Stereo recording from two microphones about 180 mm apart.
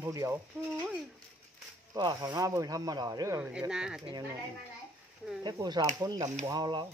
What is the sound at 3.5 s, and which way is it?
Chop, 5° right (ahead or behind).